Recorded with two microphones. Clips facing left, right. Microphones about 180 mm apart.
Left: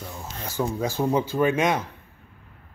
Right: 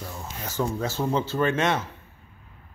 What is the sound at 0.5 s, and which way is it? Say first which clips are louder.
A man's voice: left 1 dB; 10° left (ahead or behind).